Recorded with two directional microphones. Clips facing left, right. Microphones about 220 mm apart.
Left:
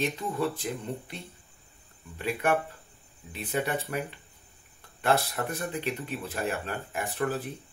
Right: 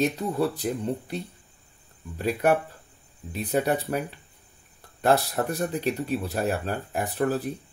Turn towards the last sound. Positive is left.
turn(degrees=-40)  # may be behind; listen again after turning